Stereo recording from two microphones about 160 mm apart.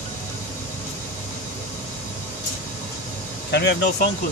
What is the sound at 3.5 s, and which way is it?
Speech, 90° left.